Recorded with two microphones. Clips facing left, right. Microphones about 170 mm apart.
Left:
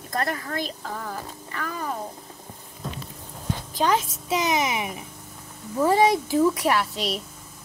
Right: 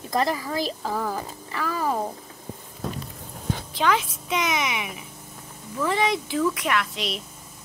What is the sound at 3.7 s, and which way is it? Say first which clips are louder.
A woman's voice: left 1 dB; 40° left (ahead or behind).